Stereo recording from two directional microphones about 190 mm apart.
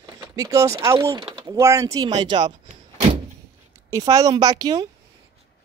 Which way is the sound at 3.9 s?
20° right (ahead or behind).